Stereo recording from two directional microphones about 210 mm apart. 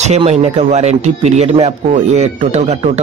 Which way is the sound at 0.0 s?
30° right (ahead or behind).